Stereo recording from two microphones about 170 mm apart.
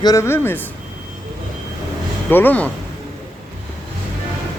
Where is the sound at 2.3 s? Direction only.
10° left (ahead or behind).